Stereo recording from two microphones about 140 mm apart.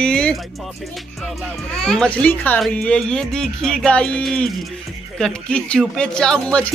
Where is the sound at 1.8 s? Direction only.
5° left (ahead or behind).